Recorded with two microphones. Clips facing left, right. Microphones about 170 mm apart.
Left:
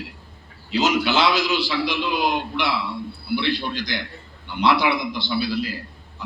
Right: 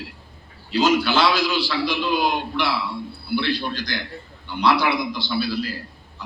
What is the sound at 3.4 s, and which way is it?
A man's voice, 20° left (ahead or behind).